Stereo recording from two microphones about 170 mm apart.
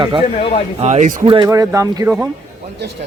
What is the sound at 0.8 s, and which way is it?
Speech, 40° right (ahead or behind).